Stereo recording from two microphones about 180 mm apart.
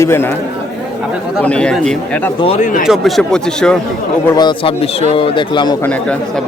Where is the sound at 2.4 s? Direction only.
35° left (ahead or behind).